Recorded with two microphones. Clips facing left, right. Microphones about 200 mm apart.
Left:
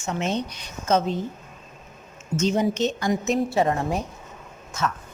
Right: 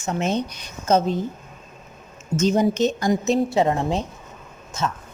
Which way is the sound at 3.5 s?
20° right (ahead or behind).